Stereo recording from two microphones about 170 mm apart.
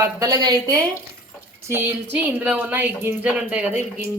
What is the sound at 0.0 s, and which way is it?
A woman's voice, 20° right (ahead or behind).